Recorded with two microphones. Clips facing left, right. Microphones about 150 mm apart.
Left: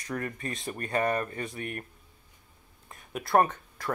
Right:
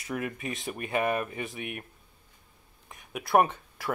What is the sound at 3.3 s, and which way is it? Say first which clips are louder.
Speech: right 1 dB; 10° right (ahead or behind).